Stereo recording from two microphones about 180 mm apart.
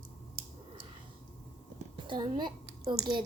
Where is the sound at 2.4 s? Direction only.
20° right (ahead or behind).